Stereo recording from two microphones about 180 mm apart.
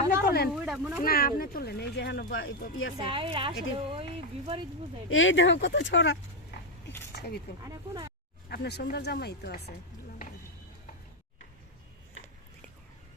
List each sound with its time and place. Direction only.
0.3 s speech: 60° left (ahead or behind)
0.5 s speech: 5° right (ahead or behind)
1.0 s speech: 55° left (ahead or behind); by 2.5 s 80° left
3.0 s speech: 30° right (ahead or behind)
5.0 s speech: 90° left
7.1 s a sound: 65° left (ahead or behind)
7.6 s speech: 20° right (ahead or behind)
8.4 s speech: 65° left (ahead or behind)